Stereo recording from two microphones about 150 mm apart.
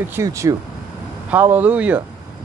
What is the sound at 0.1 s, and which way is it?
Speech, 20° right (ahead or behind).